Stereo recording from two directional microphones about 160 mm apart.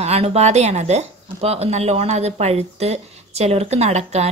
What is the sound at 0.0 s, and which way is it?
Speech, 40° right (ahead or behind).